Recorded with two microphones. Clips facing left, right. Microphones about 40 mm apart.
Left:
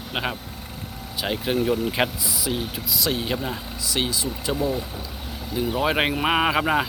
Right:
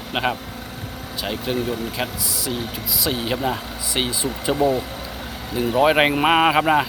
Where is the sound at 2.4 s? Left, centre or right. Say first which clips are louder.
Even; centre.